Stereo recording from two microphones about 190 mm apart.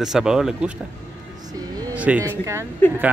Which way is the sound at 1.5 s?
20° right (ahead or behind).